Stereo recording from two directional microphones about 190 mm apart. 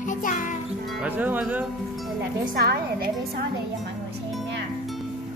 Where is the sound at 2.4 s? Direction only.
55° right (ahead or behind).